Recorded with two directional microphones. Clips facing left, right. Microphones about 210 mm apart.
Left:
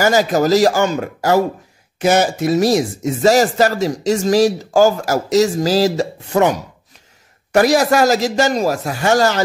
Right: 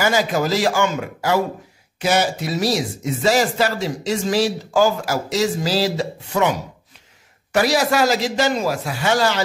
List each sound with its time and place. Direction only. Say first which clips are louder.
0.0 s speech: left 5 dB; 40° left (ahead or behind)
7.5 s speech: left 5 dB; 45° left (ahead or behind)